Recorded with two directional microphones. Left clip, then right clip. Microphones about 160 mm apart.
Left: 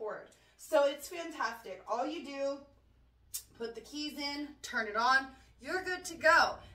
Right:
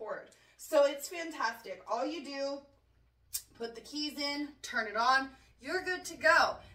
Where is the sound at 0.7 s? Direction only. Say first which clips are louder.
Right 1 dB; 5° left (ahead or behind).